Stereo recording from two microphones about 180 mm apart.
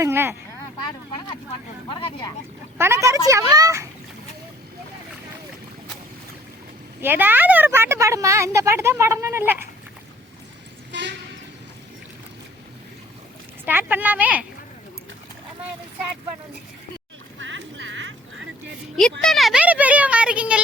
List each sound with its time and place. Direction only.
0.0 s a woman's voice: 15° right (ahead or behind)
1.9 s speech: 30° left (ahead or behind)
2.7 s a woman's voice: 15° right (ahead or behind)
7.0 s a woman's voice: 10° right (ahead or behind)
13.7 s a woman's voice: 10° right (ahead or behind)
17.4 s a sound: 90° right
19.2 s a child's voice: centre (ahead or behind)